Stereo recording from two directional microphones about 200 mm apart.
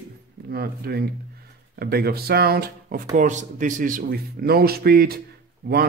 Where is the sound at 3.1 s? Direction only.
40° right (ahead or behind).